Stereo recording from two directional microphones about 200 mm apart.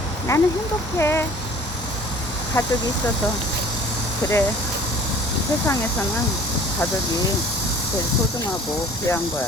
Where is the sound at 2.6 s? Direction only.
15° left (ahead or behind).